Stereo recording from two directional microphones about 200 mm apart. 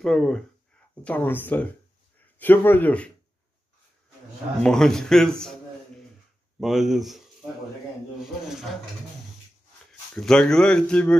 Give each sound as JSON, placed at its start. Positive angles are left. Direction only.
{"t": 0.0, "sound": "speech", "side_deg": 0}
{"t": 4.6, "sound": "speech", "side_deg": 5}
{"t": 6.6, "sound": "speech", "side_deg": 0}
{"t": 10.1, "sound": "speech", "side_deg": 5}